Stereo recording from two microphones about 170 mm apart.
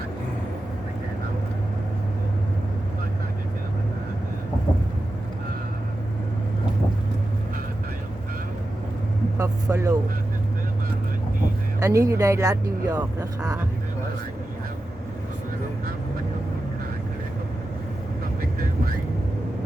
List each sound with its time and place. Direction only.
9.4 s vehicle: 20° right (ahead or behind)
11.8 s speech: 20° right (ahead or behind)